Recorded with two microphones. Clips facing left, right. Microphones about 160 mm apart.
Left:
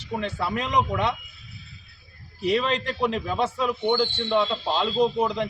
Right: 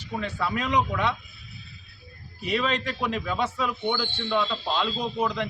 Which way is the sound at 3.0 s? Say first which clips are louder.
Left 4 dB; 30° left (ahead or behind).